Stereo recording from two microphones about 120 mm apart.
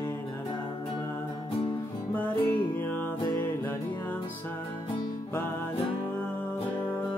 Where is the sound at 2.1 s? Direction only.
15° left (ahead or behind).